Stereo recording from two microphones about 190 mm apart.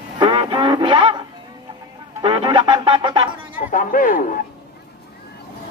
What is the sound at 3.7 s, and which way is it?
Speech, 45° left (ahead or behind).